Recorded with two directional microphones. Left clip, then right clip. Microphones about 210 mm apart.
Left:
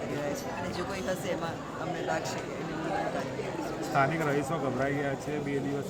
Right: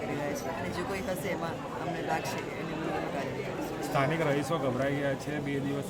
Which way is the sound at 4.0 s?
45° right (ahead or behind).